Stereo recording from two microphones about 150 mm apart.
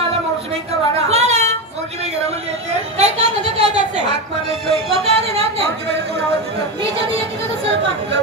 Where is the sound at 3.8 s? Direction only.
50° right (ahead or behind).